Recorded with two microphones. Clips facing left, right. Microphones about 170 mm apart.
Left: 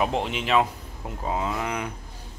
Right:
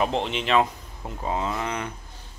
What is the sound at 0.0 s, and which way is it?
A man's voice, 5° left (ahead or behind).